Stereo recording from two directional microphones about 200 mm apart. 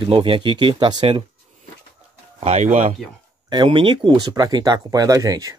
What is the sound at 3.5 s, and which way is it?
Speech, 25° right (ahead or behind).